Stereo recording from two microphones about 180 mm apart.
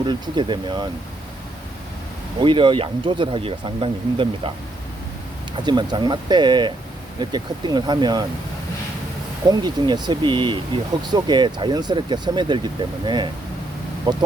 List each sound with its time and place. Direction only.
0.0 s speech: 25° right (ahead or behind)
2.4 s speech: 25° right (ahead or behind)
5.6 s speech: 25° right (ahead or behind)
9.5 s speech: 25° right (ahead or behind)
14.1 s speech: 25° right (ahead or behind)